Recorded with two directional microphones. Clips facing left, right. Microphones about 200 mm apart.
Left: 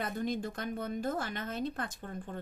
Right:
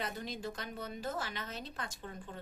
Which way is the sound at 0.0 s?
50° left (ahead or behind).